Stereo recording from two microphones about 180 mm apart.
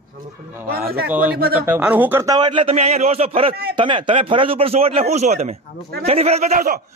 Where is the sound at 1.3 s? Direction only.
60° right (ahead or behind).